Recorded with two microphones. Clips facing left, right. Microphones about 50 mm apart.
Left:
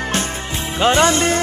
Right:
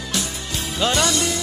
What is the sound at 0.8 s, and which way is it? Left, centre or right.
Music, left.